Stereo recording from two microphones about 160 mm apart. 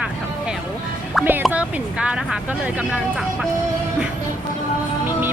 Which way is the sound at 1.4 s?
5° right (ahead or behind).